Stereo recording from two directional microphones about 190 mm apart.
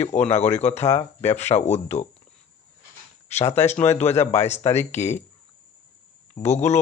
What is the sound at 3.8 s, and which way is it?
Speech, 35° left (ahead or behind).